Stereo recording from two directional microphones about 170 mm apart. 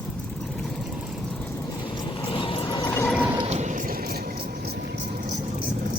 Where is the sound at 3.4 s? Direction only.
40° right (ahead or behind); by 5.0 s 70° right (ahead or behind).